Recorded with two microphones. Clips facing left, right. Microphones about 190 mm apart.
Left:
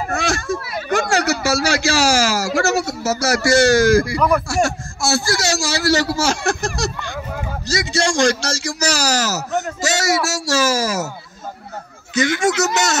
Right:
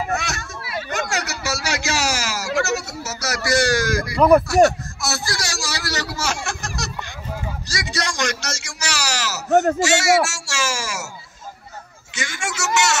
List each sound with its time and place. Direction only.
0.2 s a sound: 30° left (ahead or behind)
0.9 s speech: 30° left (ahead or behind)
9.5 s a man's voice: 50° right (ahead or behind)
9.8 s speech: 40° left (ahead or behind)
12.4 s speech: 35° left (ahead or behind)